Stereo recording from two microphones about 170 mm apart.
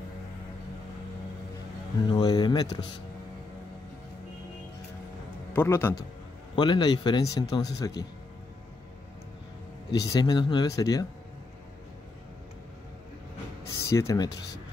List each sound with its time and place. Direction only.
2.0 s a man's voice: 25° left (ahead or behind)
5.5 s a man's voice: 15° left (ahead or behind)
6.5 s a man's voice: 25° left (ahead or behind)
9.9 s a man's voice: 20° left (ahead or behind)
13.8 s a man's voice: 20° left (ahead or behind)